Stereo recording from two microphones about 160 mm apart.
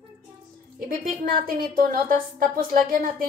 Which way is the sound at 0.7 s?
65° right (ahead or behind).